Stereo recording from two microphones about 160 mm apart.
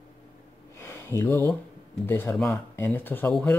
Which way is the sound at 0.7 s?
15° left (ahead or behind).